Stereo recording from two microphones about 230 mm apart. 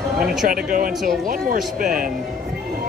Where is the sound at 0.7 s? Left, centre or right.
Right.